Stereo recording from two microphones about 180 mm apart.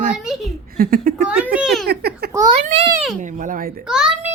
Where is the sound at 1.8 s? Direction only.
65° right (ahead or behind).